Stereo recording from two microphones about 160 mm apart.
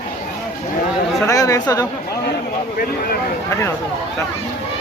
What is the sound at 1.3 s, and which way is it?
Speech, 20° left (ahead or behind).